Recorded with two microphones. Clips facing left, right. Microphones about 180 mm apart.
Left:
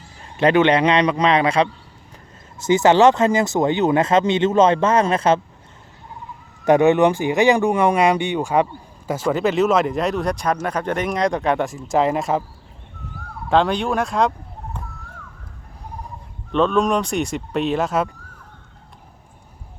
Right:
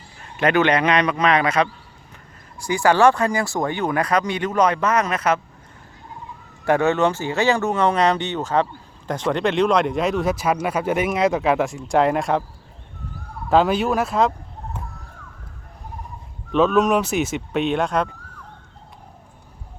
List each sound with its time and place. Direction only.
0.3 s speech: 25° left (ahead or behind)
6.7 s speech: 15° left (ahead or behind); by 12.4 s centre (ahead or behind)
13.5 s speech: 5° right (ahead or behind)
16.5 s speech: 5° right (ahead or behind)